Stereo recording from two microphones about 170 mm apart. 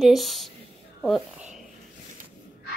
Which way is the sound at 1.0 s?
Centre (ahead or behind).